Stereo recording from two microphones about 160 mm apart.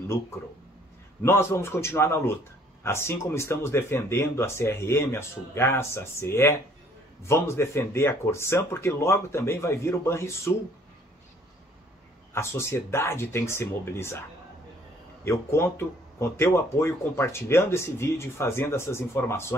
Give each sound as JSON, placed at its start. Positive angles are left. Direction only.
{"t": 1.2, "sound": "speech", "side_deg": 15}
{"t": 12.4, "sound": "speech", "side_deg": 15}
{"t": 15.2, "sound": "speech", "side_deg": 15}